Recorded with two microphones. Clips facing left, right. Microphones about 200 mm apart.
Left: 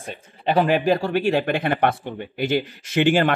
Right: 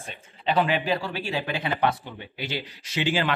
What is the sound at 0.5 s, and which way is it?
Speech, 45° left (ahead or behind).